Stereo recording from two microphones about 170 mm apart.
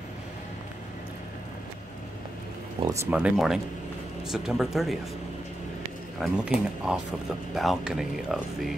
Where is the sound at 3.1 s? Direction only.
5° right (ahead or behind).